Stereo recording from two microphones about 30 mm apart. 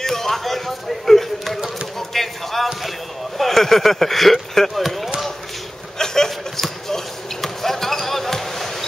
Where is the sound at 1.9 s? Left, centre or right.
Centre.